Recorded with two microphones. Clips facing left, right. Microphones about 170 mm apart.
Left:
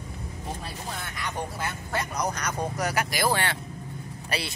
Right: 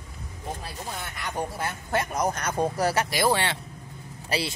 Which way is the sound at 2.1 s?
25° right (ahead or behind).